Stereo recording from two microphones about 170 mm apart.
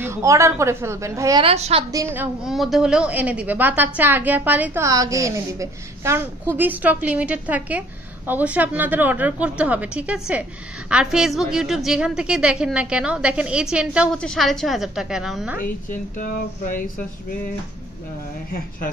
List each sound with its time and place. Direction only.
0.0 s a woman's voice: 15° right (ahead or behind)
1.4 s a woman's voice: 35° right (ahead or behind)
1.9 s a woman's voice: 15° right (ahead or behind)
2.4 s a woman's voice: centre (ahead or behind)
14.1 s a woman's voice: 5° left (ahead or behind)
15.6 s speech: 55° left (ahead or behind)